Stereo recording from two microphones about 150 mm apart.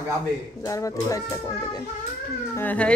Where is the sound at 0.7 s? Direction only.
20° left (ahead or behind).